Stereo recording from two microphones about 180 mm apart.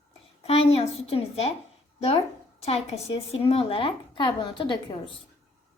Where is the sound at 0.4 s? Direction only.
35° left (ahead or behind).